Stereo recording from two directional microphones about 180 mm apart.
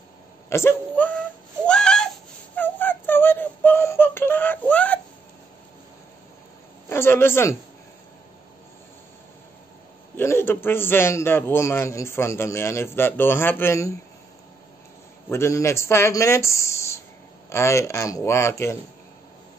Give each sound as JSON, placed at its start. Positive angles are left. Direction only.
{"t": 0.5, "sound": "a man's voice", "side_deg": 15}
{"t": 1.7, "sound": "a sound", "side_deg": 5}
{"t": 2.5, "sound": "synthetic singing", "side_deg": 10}
{"t": 6.9, "sound": "a man's voice", "side_deg": 15}
{"t": 10.1, "sound": "a man's voice", "side_deg": 15}
{"t": 15.2, "sound": "a man's voice", "side_deg": 15}